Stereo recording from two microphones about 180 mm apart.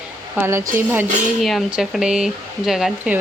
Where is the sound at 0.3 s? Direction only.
15° right (ahead or behind).